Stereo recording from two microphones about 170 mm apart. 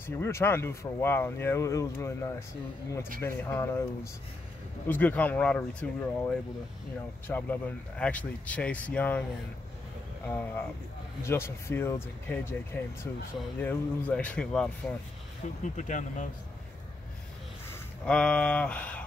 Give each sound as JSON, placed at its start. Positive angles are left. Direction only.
{"t": 0.0, "sound": "speech", "side_deg": 15}
{"t": 10.2, "sound": "speech", "side_deg": 10}
{"t": 13.6, "sound": "speech", "side_deg": 10}
{"t": 15.7, "sound": "speech", "side_deg": 45}
{"t": 17.6, "sound": "speech", "side_deg": 5}